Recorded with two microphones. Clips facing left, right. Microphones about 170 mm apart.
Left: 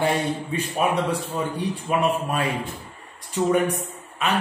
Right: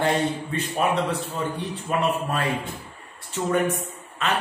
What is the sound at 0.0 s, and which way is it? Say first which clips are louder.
A man's voice: even; 10° left (ahead or behind).